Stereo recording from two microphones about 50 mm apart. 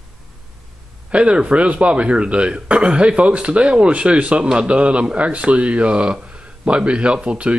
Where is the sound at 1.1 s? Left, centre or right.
Right.